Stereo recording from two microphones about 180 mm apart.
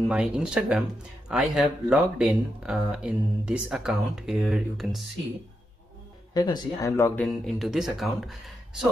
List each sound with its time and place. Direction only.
0.1 s speech: 5° right (ahead or behind)
6.3 s speech: 20° left (ahead or behind)
7.4 s speech: centre (ahead or behind)